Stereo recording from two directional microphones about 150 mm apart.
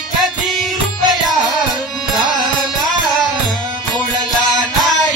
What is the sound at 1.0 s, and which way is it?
Music, 30° right (ahead or behind).